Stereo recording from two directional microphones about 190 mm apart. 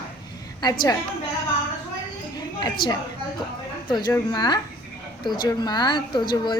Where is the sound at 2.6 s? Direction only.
20° left (ahead or behind).